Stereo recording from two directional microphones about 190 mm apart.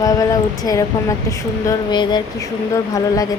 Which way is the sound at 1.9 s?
20° left (ahead or behind).